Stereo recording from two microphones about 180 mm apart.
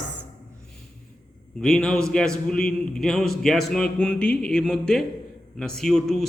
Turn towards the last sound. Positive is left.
turn(degrees=0)  # may be behind; listen again after turning